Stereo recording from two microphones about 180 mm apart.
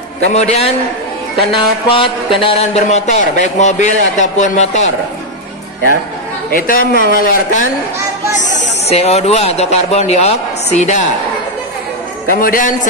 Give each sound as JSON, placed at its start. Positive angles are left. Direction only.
{"t": 0.3, "sound": "a man's voice", "side_deg": 35}
{"t": 6.5, "sound": "speech", "side_deg": 50}
{"t": 8.4, "sound": "a man's voice", "side_deg": 40}
{"t": 12.3, "sound": "speech", "side_deg": 50}